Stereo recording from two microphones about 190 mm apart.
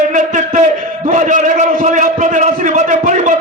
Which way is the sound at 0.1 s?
40° right (ahead or behind).